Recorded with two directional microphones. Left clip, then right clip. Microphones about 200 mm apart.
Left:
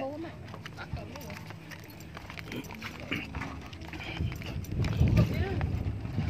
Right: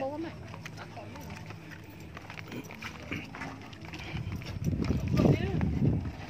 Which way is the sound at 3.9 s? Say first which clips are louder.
Left 3 dB; 15° left (ahead or behind).